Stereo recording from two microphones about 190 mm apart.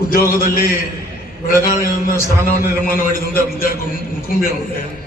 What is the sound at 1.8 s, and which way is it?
A man's voice, 50° left (ahead or behind).